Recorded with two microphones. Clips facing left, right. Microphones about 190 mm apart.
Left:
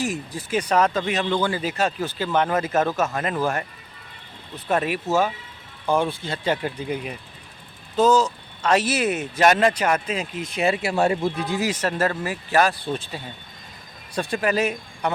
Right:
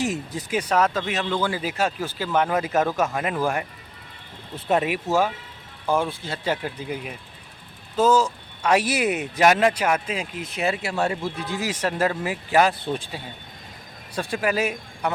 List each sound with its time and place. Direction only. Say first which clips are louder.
0.0 s speech: right 1 dB; 20° right (ahead or behind)
0.5 s speech: left 1 dB; 5° right (ahead or behind)
10.9 s a man's voice: left 4 dB; 15° left (ahead or behind)
11.7 s speech: even; 10° right (ahead or behind)